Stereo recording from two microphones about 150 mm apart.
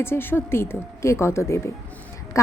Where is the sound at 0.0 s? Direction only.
15° left (ahead or behind).